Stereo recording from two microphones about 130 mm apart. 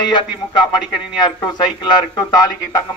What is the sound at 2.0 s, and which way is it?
Speech, 30° left (ahead or behind).